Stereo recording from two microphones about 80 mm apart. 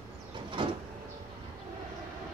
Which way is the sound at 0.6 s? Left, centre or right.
Right.